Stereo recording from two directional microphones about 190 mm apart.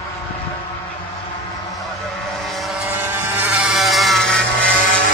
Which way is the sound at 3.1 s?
10° right (ahead or behind).